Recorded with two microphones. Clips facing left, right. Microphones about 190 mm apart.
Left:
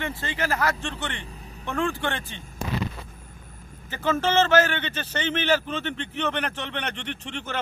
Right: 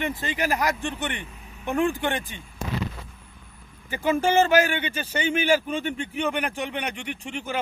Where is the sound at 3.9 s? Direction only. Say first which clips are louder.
Right 2 dB; 15° right (ahead or behind).